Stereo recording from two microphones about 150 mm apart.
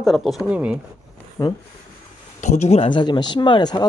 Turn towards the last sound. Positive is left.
turn(degrees=30)  # may be behind; listen again after turning